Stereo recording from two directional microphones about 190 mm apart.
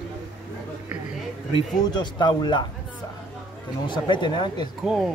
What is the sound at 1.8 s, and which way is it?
Speech, 20° left (ahead or behind).